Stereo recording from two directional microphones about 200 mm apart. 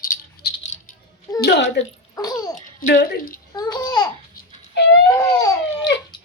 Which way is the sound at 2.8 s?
50° left (ahead or behind).